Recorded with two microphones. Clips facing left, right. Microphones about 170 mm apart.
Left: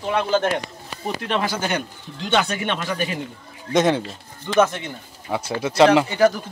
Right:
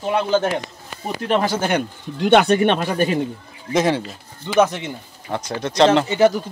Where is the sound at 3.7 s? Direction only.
Centre (ahead or behind).